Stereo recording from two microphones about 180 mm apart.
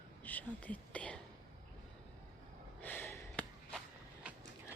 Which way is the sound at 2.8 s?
10° left (ahead or behind).